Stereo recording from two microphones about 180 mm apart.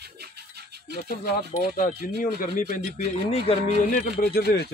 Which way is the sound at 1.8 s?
50° left (ahead or behind).